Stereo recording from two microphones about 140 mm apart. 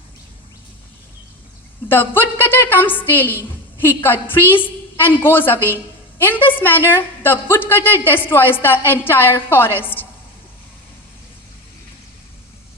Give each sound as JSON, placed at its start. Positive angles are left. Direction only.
{"t": 1.9, "sound": "a woman's voice", "side_deg": 15}